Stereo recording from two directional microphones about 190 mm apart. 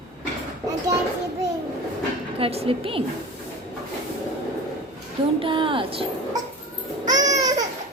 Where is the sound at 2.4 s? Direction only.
30° right (ahead or behind).